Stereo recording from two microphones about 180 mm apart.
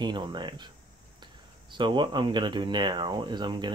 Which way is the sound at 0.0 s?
25° right (ahead or behind).